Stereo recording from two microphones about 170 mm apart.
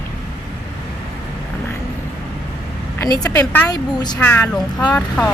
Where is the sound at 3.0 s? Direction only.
20° left (ahead or behind).